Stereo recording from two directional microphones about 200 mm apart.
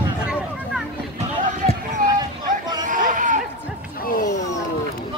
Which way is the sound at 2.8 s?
40° right (ahead or behind).